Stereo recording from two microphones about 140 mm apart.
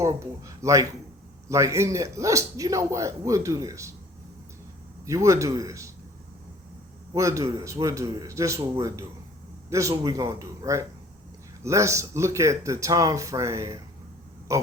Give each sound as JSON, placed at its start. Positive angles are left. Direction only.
{"t": 0.0, "sound": "a man's voice", "side_deg": -20}
{"t": 5.0, "sound": "a man's voice", "side_deg": -20}
{"t": 7.1, "sound": "a man's voice", "side_deg": -20}